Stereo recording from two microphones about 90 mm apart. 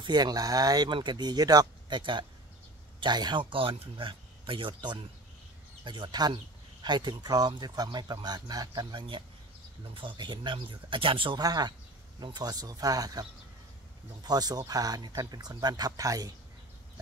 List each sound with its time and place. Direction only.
0.0 s speech: 50° right (ahead or behind)
0.9 s speech: 55° right (ahead or behind); by 11.3 s 75° right (ahead or behind)
11.3 s speech: 50° right (ahead or behind)